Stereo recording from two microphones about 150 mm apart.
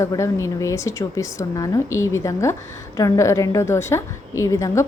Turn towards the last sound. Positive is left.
turn(degrees=20)  # may be behind; listen again after turning